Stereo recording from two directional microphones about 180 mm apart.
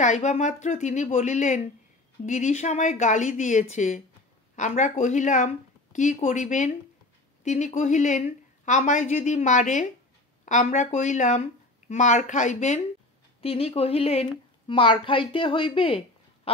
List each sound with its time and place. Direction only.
0.0 s a woman's voice: 40° left (ahead or behind)